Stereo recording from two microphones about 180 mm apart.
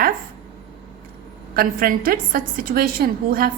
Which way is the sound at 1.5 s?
50° right (ahead or behind).